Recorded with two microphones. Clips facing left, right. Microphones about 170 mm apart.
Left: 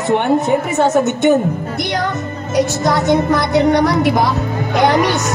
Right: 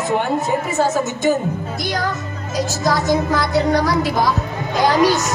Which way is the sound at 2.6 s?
65° left (ahead or behind).